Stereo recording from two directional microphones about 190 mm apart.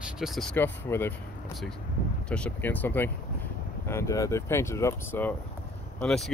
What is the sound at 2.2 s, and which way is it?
Speech, 5° left (ahead or behind).